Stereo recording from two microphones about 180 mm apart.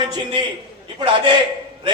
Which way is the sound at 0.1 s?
25° right (ahead or behind).